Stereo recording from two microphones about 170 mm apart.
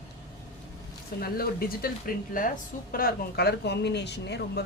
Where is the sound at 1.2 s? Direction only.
65° left (ahead or behind).